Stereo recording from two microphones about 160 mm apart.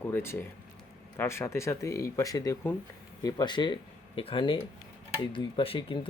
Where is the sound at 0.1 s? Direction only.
15° left (ahead or behind).